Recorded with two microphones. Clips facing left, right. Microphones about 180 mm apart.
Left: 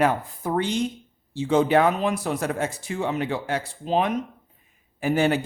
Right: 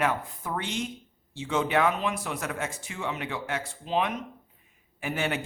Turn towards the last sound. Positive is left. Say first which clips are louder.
# left 9 dB
turn(degrees=35)  # may be behind; listen again after turning